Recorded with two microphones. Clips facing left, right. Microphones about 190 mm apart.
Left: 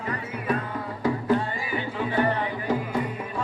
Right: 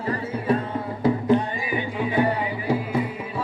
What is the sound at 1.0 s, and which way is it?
Music, 20° right (ahead or behind).